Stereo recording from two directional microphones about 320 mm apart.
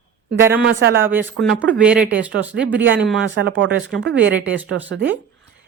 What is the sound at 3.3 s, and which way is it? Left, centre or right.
Speech, right.